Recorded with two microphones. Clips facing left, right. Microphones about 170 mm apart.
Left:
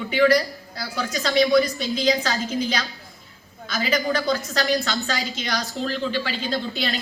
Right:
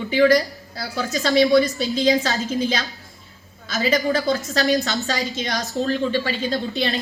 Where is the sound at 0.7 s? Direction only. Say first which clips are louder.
Right 3 dB; 25° right (ahead or behind).